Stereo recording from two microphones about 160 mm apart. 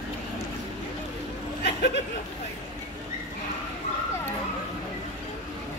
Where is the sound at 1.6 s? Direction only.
90° left.